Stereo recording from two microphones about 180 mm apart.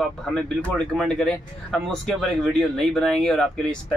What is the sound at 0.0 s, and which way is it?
Speech, centre (ahead or behind).